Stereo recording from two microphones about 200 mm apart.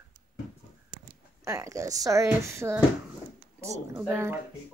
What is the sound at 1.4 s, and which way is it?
A woman's voice, 15° right (ahead or behind).